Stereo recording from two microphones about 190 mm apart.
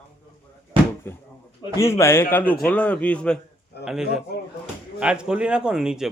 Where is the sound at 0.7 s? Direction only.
25° right (ahead or behind).